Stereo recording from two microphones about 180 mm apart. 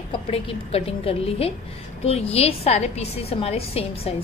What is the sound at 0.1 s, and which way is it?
A woman's voice, 35° left (ahead or behind).